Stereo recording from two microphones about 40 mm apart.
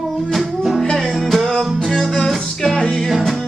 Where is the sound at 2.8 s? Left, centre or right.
Left.